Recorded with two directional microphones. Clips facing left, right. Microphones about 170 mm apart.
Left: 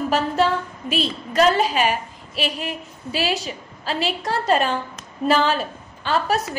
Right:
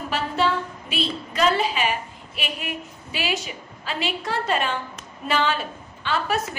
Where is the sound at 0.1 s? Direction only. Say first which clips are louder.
Left 2 dB; 40° left (ahead or behind).